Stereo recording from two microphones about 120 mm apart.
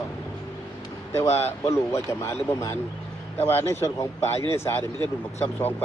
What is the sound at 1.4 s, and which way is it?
Speech, 25° left (ahead or behind).